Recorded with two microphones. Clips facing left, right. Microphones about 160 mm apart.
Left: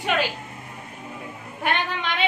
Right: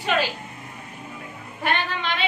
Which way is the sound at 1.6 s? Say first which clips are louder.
Even; 15° left (ahead or behind).